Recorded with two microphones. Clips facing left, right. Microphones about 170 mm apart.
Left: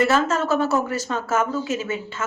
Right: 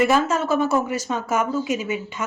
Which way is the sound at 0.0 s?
10° right (ahead or behind).